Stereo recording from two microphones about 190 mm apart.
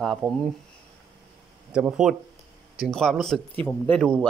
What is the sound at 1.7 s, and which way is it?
Speech, 5° right (ahead or behind).